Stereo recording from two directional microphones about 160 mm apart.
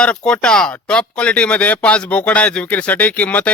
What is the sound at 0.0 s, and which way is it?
Speech, 5° left (ahead or behind).